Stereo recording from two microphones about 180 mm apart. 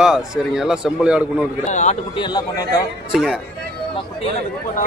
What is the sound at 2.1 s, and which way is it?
Speech, 25° left (ahead or behind).